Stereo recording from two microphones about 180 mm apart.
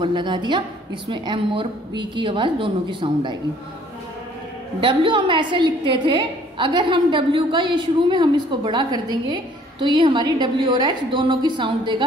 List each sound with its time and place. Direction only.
0.0 s a woman's voice: 25° right (ahead or behind)
4.7 s a woman's voice: 25° right (ahead or behind)